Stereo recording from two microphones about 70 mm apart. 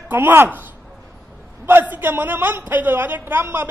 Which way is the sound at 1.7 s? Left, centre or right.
Right.